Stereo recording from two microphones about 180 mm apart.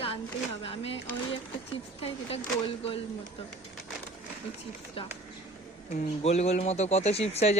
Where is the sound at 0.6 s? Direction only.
30° left (ahead or behind).